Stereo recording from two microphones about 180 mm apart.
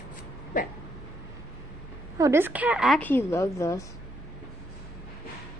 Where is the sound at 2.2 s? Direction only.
15° right (ahead or behind); by 3.9 s 15° left (ahead or behind).